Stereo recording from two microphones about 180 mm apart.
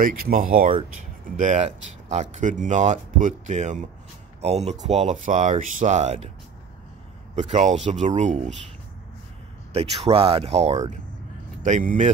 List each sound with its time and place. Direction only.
0.0 s speech: 50° right (ahead or behind)
7.3 s speech: 40° right (ahead or behind)
9.7 s speech: 30° right (ahead or behind)